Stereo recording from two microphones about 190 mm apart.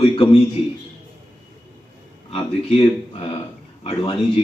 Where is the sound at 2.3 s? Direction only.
30° left (ahead or behind).